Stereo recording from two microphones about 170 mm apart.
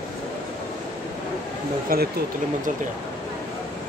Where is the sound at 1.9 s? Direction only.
60° right (ahead or behind).